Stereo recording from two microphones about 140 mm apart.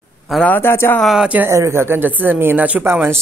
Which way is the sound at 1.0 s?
5° right (ahead or behind).